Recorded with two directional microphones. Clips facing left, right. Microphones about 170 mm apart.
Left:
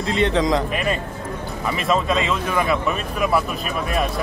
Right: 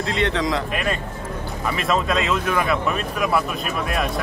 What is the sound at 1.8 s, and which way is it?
A man's voice, centre (ahead or behind).